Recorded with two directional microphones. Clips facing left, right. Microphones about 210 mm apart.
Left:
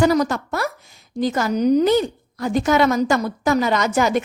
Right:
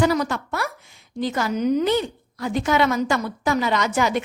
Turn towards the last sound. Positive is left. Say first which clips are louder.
# left 3 dB
turn(degrees=45)  # may be behind; listen again after turning